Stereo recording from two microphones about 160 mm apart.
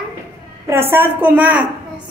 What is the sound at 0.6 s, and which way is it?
A woman's voice, 15° right (ahead or behind).